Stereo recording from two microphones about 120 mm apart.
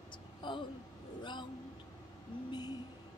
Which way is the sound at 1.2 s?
40° left (ahead or behind).